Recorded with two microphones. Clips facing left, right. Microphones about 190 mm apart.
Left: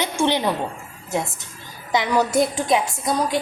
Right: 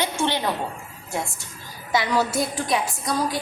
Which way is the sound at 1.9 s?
20° left (ahead or behind).